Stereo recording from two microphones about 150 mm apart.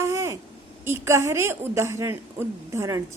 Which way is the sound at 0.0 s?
20° right (ahead or behind).